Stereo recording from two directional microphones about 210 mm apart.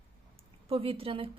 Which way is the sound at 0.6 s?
25° right (ahead or behind).